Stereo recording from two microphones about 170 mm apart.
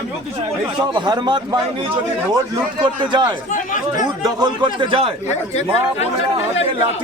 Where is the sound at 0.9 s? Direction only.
25° right (ahead or behind).